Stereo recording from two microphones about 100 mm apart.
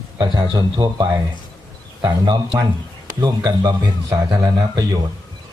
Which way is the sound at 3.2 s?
40° right (ahead or behind).